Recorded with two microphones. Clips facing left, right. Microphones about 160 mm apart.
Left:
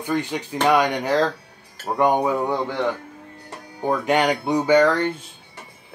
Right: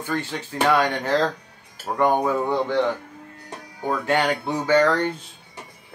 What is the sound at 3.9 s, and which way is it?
Speech, 15° left (ahead or behind).